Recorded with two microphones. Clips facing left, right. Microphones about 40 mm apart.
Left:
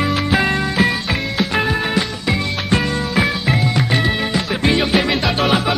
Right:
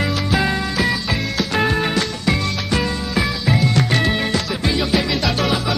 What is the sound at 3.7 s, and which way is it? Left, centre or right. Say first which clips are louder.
Music: even; centre.